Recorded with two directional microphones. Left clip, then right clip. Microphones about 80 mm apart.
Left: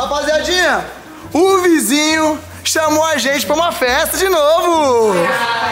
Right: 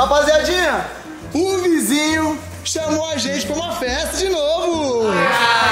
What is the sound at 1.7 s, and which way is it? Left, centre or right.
Speech, centre.